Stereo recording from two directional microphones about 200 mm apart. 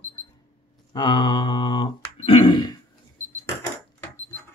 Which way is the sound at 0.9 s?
20° left (ahead or behind).